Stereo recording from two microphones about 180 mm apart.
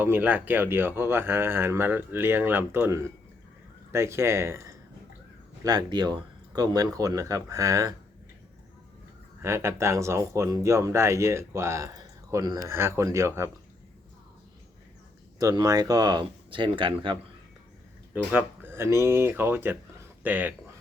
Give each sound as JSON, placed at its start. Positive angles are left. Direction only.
{"t": 0.0, "sound": "speech", "side_deg": -10}
{"t": 9.4, "sound": "speech", "side_deg": -15}
{"t": 15.4, "sound": "speech", "side_deg": -20}
{"t": 18.1, "sound": "speech", "side_deg": -10}